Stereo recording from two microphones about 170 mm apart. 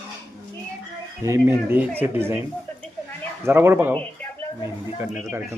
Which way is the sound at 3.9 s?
10° left (ahead or behind).